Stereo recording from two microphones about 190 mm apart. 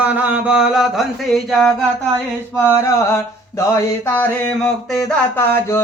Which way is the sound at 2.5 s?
15° left (ahead or behind).